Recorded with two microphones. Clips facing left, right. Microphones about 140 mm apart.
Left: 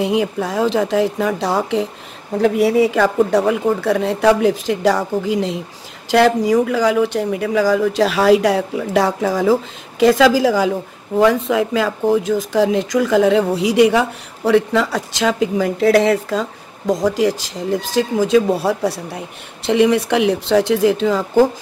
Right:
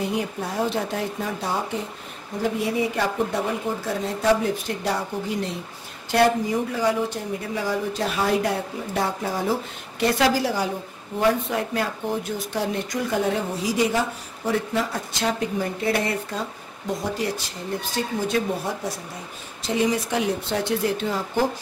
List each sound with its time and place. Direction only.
0.0 s speech: 90° left
2.3 s speech: 75° left (ahead or behind)